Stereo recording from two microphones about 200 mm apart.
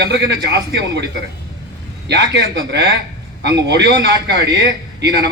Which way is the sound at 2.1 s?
60° right (ahead or behind).